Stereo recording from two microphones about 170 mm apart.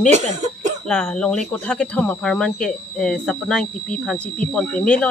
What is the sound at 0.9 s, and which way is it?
Speech, 5° left (ahead or behind).